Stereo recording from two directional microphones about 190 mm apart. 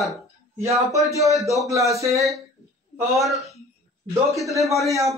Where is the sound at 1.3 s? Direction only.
15° right (ahead or behind).